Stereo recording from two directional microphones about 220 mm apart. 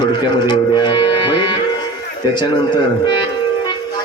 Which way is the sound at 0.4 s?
20° left (ahead or behind).